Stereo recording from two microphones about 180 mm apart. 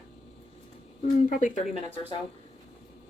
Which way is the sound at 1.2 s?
45° left (ahead or behind).